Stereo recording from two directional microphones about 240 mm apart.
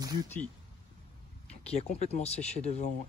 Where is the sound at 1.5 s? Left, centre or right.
Left.